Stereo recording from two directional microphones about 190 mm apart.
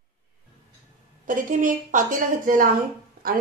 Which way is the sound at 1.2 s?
45° right (ahead or behind).